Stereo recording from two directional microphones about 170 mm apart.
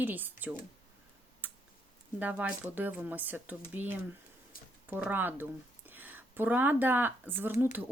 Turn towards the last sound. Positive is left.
turn(degrees=-10)  # may be behind; listen again after turning